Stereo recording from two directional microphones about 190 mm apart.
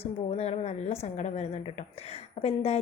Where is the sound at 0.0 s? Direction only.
35° left (ahead or behind).